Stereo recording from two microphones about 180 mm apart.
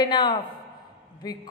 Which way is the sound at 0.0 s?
25° left (ahead or behind).